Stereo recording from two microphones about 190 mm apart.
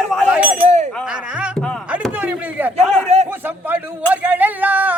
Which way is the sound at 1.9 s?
5° right (ahead or behind).